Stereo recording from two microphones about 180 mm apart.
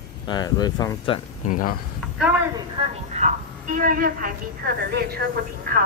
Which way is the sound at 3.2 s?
45° right (ahead or behind).